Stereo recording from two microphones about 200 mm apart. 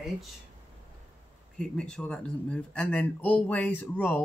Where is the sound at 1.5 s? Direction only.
5° left (ahead or behind).